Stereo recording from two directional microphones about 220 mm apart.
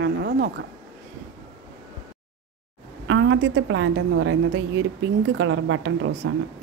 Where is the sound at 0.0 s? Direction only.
50° right (ahead or behind).